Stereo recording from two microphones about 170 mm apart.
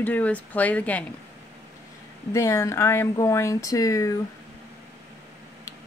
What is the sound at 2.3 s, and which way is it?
Speech, 15° left (ahead or behind).